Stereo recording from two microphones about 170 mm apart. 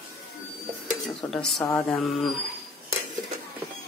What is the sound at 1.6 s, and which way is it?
Mantra, 15° left (ahead or behind).